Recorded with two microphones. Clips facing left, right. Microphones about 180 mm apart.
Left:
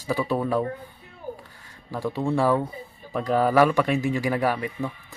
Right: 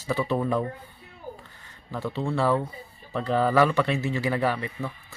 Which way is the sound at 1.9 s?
10° left (ahead or behind).